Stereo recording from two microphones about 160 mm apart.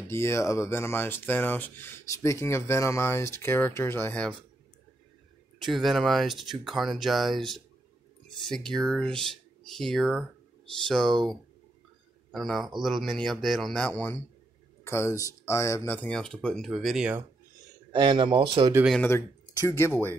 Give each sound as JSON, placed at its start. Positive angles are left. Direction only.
{"t": 0.1, "sound": "speech", "side_deg": 15}
{"t": 5.6, "sound": "speech", "side_deg": 0}
{"t": 8.7, "sound": "speech", "side_deg": 5}
{"t": 12.3, "sound": "speech", "side_deg": 0}
{"t": 17.9, "sound": "speech", "side_deg": -30}
{"t": 19.0, "sound": "speech", "side_deg": 15}